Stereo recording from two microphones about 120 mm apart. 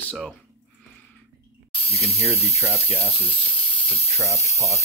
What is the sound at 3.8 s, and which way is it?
Speech, 55° left (ahead or behind).